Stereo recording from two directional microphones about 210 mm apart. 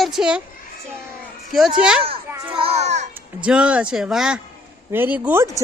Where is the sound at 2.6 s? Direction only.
30° right (ahead or behind).